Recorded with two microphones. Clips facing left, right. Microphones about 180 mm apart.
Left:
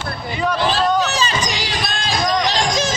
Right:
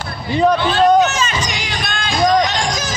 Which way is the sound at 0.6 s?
35° left (ahead or behind).